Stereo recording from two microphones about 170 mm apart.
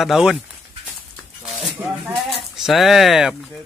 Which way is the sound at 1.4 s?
Centre (ahead or behind).